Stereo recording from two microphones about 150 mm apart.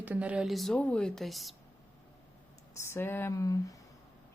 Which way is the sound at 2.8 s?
15° left (ahead or behind).